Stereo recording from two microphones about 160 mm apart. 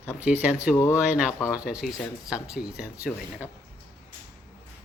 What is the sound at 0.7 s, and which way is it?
Speech, 15° left (ahead or behind).